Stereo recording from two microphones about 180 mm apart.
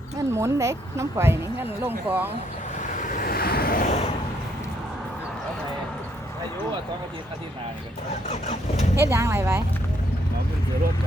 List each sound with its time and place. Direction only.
0.3 s speech: 15° right (ahead or behind)
3.0 s vehicle: 50° left (ahead or behind)
9.0 s speech: 15° right (ahead or behind)